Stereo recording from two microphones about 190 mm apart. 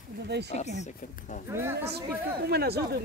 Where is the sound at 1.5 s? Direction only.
15° right (ahead or behind).